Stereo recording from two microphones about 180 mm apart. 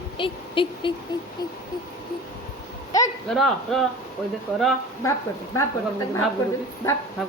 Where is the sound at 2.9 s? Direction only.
20° left (ahead or behind).